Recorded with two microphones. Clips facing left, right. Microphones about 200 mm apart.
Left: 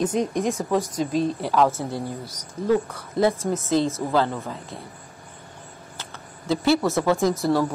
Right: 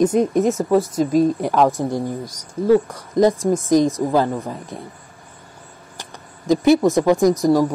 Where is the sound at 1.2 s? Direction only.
15° right (ahead or behind).